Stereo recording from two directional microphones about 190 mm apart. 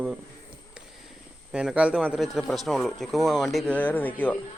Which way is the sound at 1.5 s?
5° right (ahead or behind).